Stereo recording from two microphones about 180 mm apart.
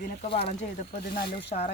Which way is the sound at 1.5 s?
45° left (ahead or behind).